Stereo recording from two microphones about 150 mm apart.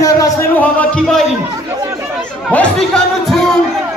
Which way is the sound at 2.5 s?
5° left (ahead or behind).